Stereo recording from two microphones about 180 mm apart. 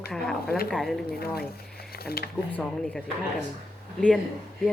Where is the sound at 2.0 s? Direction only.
60° left (ahead or behind).